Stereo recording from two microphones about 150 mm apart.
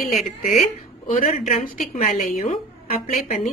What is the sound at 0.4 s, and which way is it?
Speech, 65° left (ahead or behind).